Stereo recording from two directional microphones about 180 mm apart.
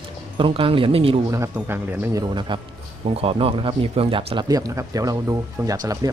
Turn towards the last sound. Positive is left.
turn(degrees=-20)  # may be behind; listen again after turning